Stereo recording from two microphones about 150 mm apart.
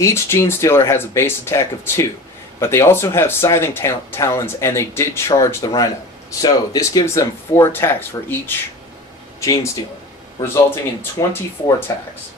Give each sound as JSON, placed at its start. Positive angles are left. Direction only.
{"t": 0.0, "sound": "speech", "side_deg": 20}